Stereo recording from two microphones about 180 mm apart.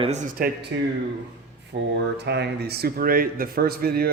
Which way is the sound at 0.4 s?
55° right (ahead or behind).